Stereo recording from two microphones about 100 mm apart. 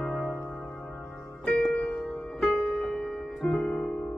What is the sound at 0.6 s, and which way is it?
Music, 15° left (ahead or behind).